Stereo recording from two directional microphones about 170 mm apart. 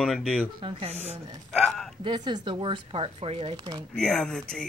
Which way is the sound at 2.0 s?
25° right (ahead or behind).